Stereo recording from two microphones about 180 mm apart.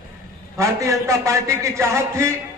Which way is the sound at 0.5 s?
15° right (ahead or behind).